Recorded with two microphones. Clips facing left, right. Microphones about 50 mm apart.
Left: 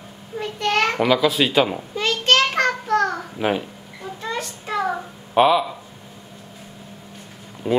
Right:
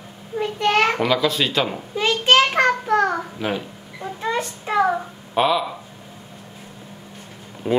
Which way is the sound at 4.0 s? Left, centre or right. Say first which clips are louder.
Right 4 dB; centre.